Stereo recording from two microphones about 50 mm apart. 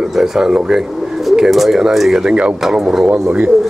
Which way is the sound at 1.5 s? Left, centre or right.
Centre.